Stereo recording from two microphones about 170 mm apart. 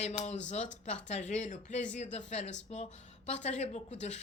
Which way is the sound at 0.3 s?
45° left (ahead or behind).